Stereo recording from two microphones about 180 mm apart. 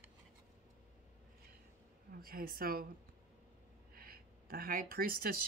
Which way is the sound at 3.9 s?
55° right (ahead or behind).